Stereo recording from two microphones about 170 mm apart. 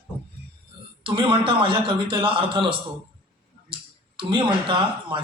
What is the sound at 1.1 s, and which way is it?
A man's voice, 30° right (ahead or behind).